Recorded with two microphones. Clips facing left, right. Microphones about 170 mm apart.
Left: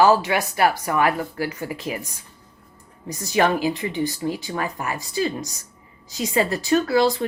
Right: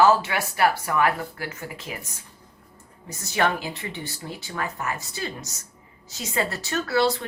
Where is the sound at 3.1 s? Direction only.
15° left (ahead or behind).